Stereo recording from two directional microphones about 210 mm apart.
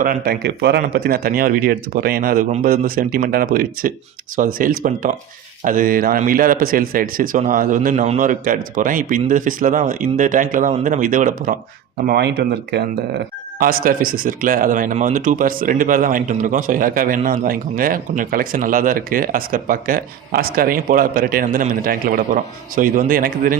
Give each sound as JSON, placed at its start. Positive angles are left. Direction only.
{"t": 0.0, "sound": "speech", "side_deg": -45}
{"t": 12.0, "sound": "speech", "side_deg": -50}